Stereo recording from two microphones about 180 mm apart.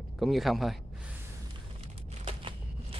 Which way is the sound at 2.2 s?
30° right (ahead or behind).